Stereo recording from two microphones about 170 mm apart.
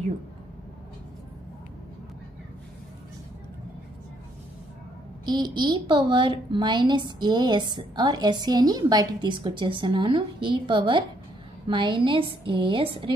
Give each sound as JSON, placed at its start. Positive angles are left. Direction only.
{"t": 5.2, "sound": "a woman's voice", "side_deg": -25}